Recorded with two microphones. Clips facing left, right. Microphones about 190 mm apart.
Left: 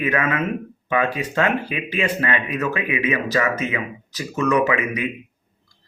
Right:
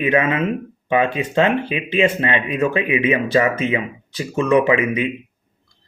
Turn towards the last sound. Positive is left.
turn(degrees=-25)  # may be behind; listen again after turning